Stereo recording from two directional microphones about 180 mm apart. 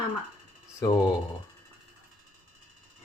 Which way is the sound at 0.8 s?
20° left (ahead or behind).